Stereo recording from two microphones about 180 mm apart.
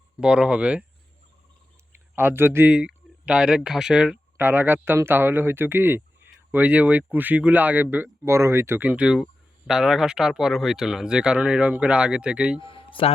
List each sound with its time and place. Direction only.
0.2 s speech: 5° right (ahead or behind)
2.1 s speech: 10° right (ahead or behind)
12.5 s speech: 30° left (ahead or behind)